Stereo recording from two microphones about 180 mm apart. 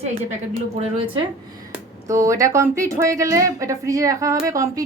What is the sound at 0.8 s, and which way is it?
Speech, 30° right (ahead or behind).